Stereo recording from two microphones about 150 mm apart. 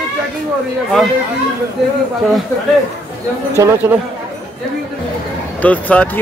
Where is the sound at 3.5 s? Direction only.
20° right (ahead or behind).